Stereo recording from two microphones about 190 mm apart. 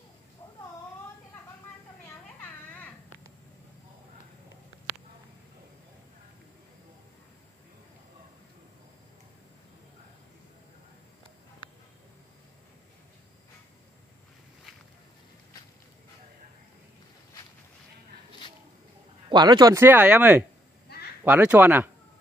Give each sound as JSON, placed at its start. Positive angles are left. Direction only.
{"t": 19.2, "sound": "speech", "side_deg": -20}